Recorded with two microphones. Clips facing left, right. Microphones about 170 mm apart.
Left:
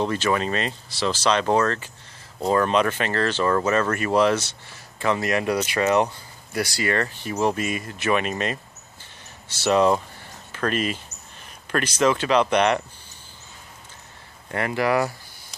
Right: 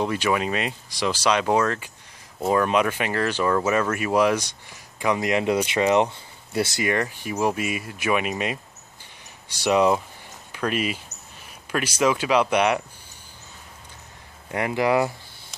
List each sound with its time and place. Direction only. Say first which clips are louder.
0.0 s speech: even; 10° right (ahead or behind)
14.5 s speech: right 1 dB; 15° right (ahead or behind)